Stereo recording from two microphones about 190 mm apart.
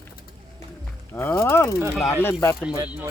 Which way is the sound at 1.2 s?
10° left (ahead or behind).